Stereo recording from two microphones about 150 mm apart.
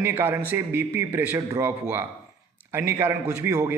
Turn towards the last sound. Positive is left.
turn(degrees=-20)  # may be behind; listen again after turning